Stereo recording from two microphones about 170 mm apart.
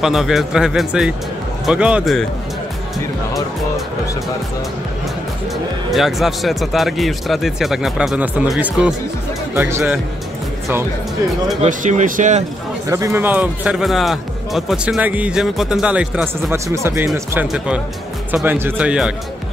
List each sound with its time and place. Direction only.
0.0 s speech: centre (ahead or behind)
5.9 s speech: centre (ahead or behind)
11.6 s speech: 45° right (ahead or behind)
12.9 s speech: 15° right (ahead or behind)
16.5 s speech: 15° right (ahead or behind)